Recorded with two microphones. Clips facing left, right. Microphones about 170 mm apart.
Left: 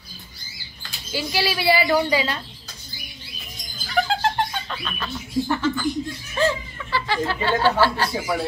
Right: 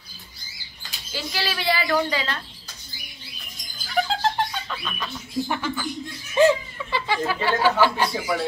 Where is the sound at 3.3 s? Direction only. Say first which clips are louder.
Left 4 dB; centre (ahead or behind).